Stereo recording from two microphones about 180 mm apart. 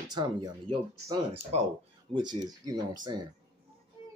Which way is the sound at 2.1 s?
25° right (ahead or behind).